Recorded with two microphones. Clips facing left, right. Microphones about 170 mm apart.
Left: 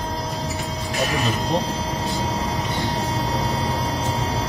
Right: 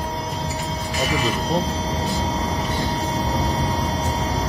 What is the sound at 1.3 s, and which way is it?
Vehicle, 35° right (ahead or behind).